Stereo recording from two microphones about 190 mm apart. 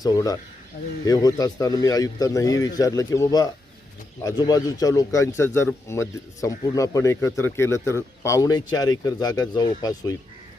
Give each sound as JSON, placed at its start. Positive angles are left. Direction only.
{"t": 0.0, "sound": "a man's voice", "side_deg": 20}